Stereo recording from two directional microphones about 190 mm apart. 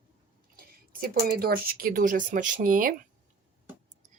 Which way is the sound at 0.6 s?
50° right (ahead or behind).